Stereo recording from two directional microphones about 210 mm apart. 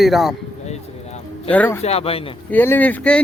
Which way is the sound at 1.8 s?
30° left (ahead or behind).